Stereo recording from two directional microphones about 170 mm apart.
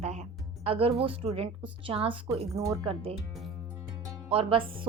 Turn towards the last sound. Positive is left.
turn(degrees=-30)  # may be behind; listen again after turning